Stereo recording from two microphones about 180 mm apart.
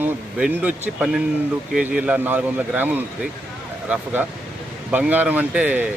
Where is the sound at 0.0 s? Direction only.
10° right (ahead or behind).